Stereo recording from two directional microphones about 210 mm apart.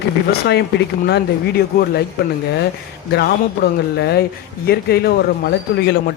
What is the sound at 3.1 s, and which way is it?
Speech, 50° left (ahead or behind).